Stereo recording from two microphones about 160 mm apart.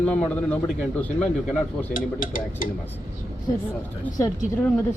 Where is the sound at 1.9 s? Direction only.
60° left (ahead or behind).